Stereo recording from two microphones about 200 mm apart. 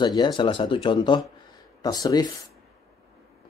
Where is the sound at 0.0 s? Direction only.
20° left (ahead or behind).